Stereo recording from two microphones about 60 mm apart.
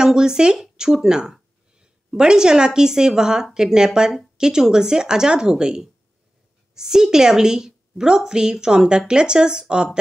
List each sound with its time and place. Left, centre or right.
0.0 s a woman's voice: centre